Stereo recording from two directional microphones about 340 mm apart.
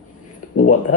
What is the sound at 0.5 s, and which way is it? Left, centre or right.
Speech, left.